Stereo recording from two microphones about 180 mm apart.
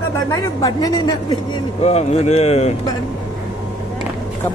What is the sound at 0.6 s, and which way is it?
Speech, 20° left (ahead or behind).